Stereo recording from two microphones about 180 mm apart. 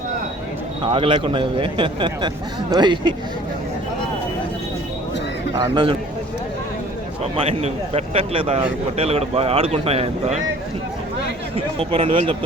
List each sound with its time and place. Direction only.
0.9 s a man's voice: 30° right (ahead or behind)
5.5 s a man's voice: 25° right (ahead or behind)
7.4 s a man's voice: 35° right (ahead or behind)
11.5 s a man's voice: 30° right (ahead or behind)